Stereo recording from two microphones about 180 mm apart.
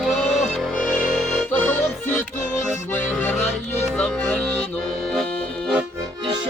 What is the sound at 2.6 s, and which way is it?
Accordion, 5° left (ahead or behind).